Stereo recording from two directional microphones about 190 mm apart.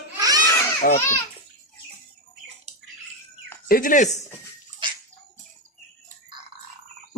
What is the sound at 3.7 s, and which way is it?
Speech, 45° left (ahead or behind).